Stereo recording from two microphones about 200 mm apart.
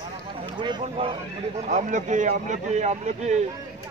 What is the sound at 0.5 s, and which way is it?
Speech, 25° right (ahead or behind).